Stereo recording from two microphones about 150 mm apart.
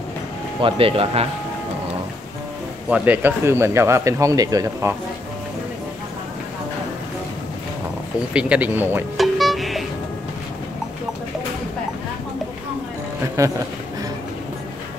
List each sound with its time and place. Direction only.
0.6 s speech: 35° right (ahead or behind)
2.9 s speech: 10° right (ahead or behind)
8.3 s speech: 10° right (ahead or behind)
9.1 s music: centre (ahead or behind)
13.4 s speech: 20° right (ahead or behind)